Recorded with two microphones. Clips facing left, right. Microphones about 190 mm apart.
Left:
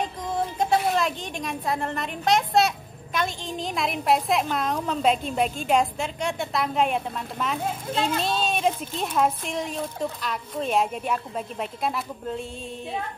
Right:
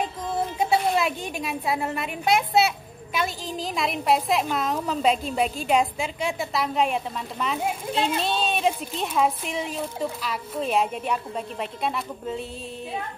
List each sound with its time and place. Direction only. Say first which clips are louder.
0.6 s a woman's voice: even; 5° right (ahead or behind)
7.9 s a child's voice: even; 30° right (ahead or behind)
8.2 s a woman's voice: even; centre (ahead or behind)